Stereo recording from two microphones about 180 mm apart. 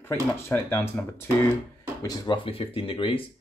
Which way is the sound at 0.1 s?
10° left (ahead or behind).